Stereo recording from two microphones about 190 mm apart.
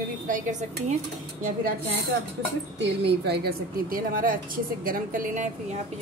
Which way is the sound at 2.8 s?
65° right (ahead or behind).